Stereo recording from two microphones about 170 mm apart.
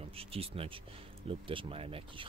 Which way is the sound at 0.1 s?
35° right (ahead or behind).